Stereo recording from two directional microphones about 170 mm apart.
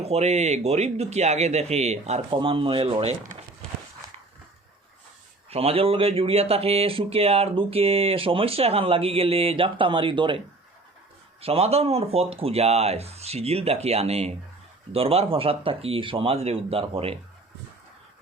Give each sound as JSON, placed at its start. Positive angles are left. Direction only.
{"t": 0.0, "sound": "speech", "side_deg": -40}
{"t": 5.5, "sound": "speech", "side_deg": -35}